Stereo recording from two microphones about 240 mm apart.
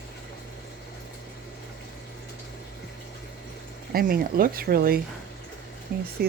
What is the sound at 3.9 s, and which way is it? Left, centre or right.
Speech, right.